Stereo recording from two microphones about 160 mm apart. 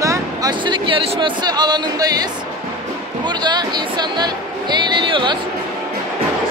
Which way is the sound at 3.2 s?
25° right (ahead or behind).